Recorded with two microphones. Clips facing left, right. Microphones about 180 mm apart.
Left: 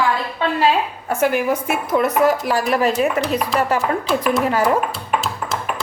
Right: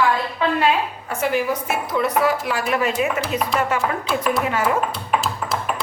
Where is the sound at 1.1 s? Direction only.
50° left (ahead or behind).